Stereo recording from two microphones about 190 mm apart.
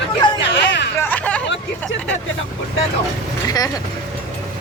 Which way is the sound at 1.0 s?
5° left (ahead or behind).